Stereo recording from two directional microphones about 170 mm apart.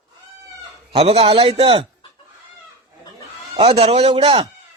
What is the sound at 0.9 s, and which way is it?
Speech, 35° right (ahead or behind).